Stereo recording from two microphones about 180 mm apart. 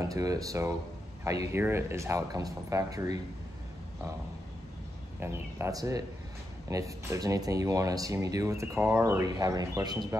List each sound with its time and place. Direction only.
0.0 s speech: 20° right (ahead or behind)
5.2 s speech: 15° right (ahead or behind)